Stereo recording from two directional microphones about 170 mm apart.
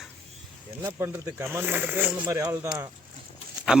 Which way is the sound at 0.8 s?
15° right (ahead or behind).